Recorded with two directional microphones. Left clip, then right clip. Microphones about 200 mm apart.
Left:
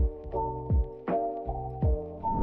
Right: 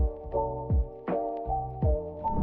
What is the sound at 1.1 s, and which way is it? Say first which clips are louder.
Music: left 1 dB; centre (ahead or behind).